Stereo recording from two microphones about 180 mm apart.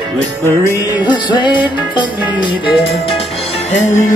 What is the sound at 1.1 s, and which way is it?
Music, 25° left (ahead or behind).